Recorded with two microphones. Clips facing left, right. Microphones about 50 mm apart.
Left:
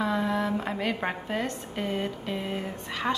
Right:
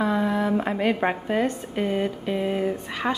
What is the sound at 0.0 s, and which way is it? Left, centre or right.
A woman's voice, centre.